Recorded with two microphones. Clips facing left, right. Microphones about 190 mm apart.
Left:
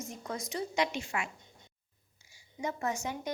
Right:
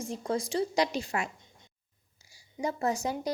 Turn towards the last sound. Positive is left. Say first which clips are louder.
# right 5 dB
turn(degrees=-35)  # may be behind; listen again after turning